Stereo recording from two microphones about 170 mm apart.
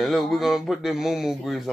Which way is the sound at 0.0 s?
Centre (ahead or behind).